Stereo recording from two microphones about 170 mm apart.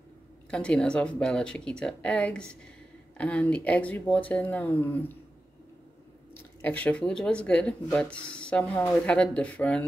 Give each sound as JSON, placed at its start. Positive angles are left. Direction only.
{"t": 0.5, "sound": "speech", "side_deg": 5}
{"t": 6.6, "sound": "speech", "side_deg": 10}